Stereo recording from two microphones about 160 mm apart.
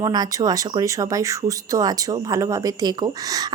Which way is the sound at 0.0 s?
20° right (ahead or behind).